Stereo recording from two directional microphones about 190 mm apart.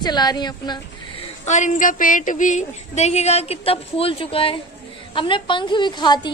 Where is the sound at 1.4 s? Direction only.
40° left (ahead or behind).